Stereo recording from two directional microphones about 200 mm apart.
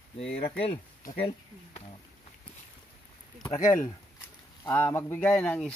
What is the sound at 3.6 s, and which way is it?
A man's voice, 10° left (ahead or behind).